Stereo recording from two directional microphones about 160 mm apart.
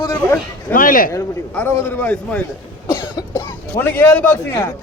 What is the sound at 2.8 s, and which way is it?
Speech, 20° left (ahead or behind).